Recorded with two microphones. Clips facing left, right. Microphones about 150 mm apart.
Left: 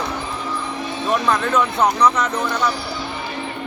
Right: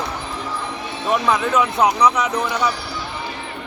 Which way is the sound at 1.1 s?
5° right (ahead or behind).